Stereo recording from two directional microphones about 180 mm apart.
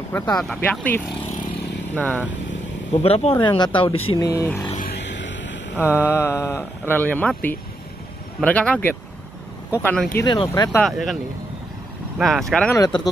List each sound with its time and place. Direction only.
0.1 s speech: 10° left (ahead or behind)
2.9 s speech: 35° left (ahead or behind)
4.3 s speech: 15° left (ahead or behind)
4.9 s a sound: 85° left
5.8 s speech: 10° left (ahead or behind)
10.2 s speech: 25° left (ahead or behind)
10.8 s speech: centre (ahead or behind)
12.2 s speech: centre (ahead or behind)
12.7 s speech: 20° left (ahead or behind)